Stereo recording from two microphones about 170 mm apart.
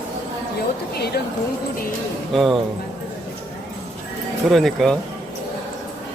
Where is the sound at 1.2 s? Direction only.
65° left (ahead or behind).